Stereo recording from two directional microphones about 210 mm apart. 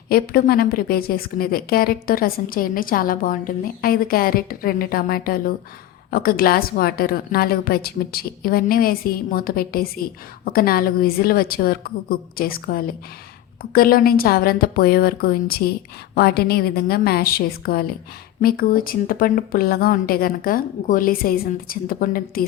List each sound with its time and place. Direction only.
0.1 s a woman's voice: 45° left (ahead or behind)